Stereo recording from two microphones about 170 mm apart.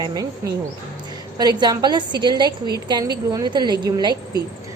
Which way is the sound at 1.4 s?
25° right (ahead or behind).